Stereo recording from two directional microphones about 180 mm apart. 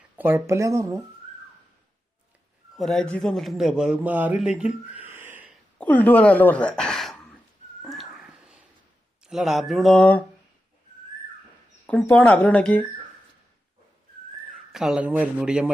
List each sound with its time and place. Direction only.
0.2 s speech: 10° right (ahead or behind)
2.7 s a man's voice: centre (ahead or behind)
5.7 s speech: 10° left (ahead or behind)
7.8 s a sound: centre (ahead or behind)
9.2 s a man's voice: centre (ahead or behind)
11.9 s speech: 10° left (ahead or behind)
14.5 s speech: centre (ahead or behind)